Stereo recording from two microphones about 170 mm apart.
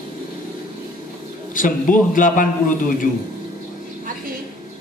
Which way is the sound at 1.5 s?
50° left (ahead or behind).